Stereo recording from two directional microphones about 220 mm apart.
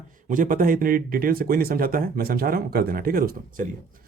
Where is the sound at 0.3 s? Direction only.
40° right (ahead or behind).